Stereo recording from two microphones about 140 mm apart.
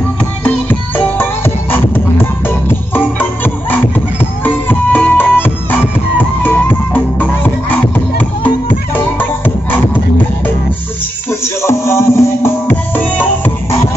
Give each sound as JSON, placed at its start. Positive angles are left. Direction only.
{"t": 0.4, "sound": "music", "side_deg": 10}
{"t": 11.2, "sound": "music", "side_deg": 20}